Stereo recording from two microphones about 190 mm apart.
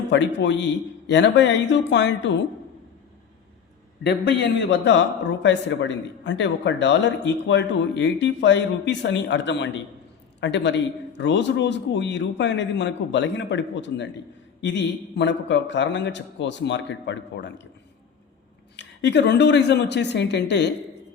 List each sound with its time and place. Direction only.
0.1 s a man's voice: 65° left (ahead or behind)
4.0 s a man's voice: 65° left (ahead or behind)
18.8 s speech: 65° left (ahead or behind)